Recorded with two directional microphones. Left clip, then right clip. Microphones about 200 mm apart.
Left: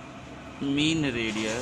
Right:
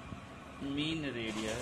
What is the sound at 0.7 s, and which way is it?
Speech, 15° left (ahead or behind).